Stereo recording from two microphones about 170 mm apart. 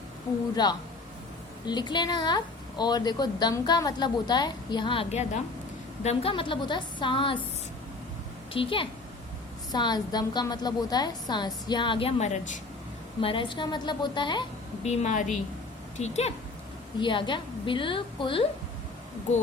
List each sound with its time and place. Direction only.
0.5 s a woman's voice: 25° left (ahead or behind)
8.5 s a woman's voice: 30° left (ahead or behind)
13.2 s a woman's voice: 30° left (ahead or behind)
14.8 s a woman's voice: 45° left (ahead or behind)
17.0 s a woman's voice: 30° left (ahead or behind)